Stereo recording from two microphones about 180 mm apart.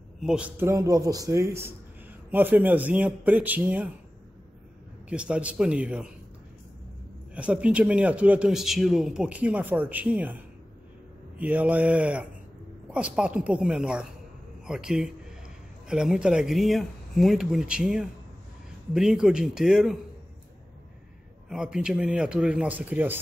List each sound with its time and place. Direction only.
0.2 s a man's voice: 5° right (ahead or behind)
5.1 s a man's voice: 5° right (ahead or behind)
7.3 s a man's voice: 5° right (ahead or behind)
21.5 s speech: 5° right (ahead or behind)